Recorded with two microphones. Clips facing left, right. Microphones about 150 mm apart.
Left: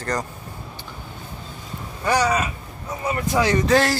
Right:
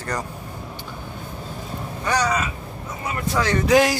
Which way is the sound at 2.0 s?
10° left (ahead or behind).